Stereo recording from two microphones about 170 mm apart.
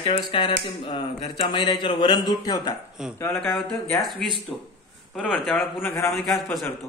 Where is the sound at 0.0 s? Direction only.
30° left (ahead or behind).